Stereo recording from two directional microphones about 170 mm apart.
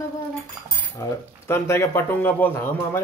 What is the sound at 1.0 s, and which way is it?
A man's voice, 15° left (ahead or behind).